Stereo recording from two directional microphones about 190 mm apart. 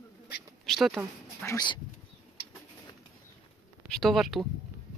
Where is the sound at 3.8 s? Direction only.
Centre (ahead or behind).